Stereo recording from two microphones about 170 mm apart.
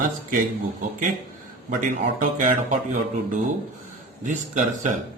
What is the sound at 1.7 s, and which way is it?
Speech, 55° right (ahead or behind).